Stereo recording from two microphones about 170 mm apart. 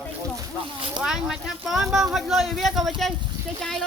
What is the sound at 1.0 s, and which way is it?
Speech, 5° right (ahead or behind).